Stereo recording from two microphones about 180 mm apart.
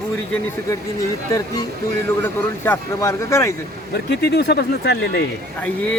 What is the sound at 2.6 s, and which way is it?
Speech, 15° left (ahead or behind).